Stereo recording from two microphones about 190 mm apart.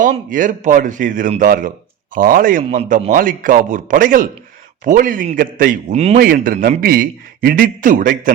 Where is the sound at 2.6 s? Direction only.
35° right (ahead or behind).